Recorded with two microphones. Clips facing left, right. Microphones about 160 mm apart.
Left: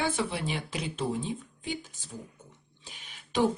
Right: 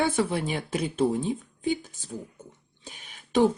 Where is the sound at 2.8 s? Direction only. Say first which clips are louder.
Right 5 dB; 50° right (ahead or behind).